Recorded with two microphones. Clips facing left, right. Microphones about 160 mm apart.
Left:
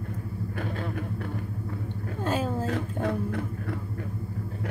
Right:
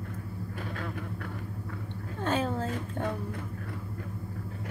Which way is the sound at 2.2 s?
10° left (ahead or behind).